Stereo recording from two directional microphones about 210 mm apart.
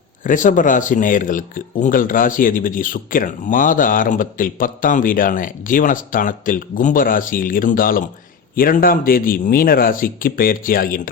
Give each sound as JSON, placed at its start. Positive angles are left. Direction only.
{"t": 0.3, "sound": "speech", "side_deg": 40}